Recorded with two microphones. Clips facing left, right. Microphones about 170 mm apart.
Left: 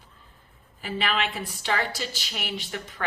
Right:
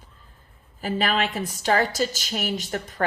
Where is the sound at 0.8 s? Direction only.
40° right (ahead or behind).